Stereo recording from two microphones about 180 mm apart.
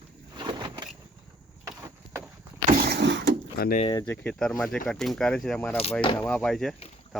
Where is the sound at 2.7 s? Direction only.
55° right (ahead or behind); by 3.3 s 75° right (ahead or behind).